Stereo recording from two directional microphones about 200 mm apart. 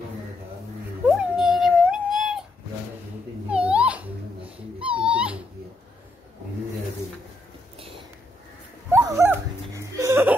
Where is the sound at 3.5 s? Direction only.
5° right (ahead or behind).